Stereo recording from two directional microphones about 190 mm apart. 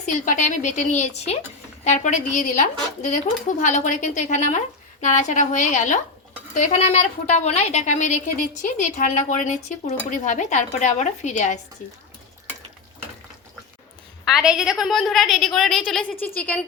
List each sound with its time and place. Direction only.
0.0 s a woman's voice: 40° left (ahead or behind)
14.3 s a woman's voice: 5° right (ahead or behind)